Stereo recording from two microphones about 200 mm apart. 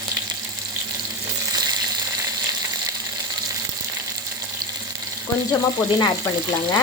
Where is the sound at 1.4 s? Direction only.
20° right (ahead or behind).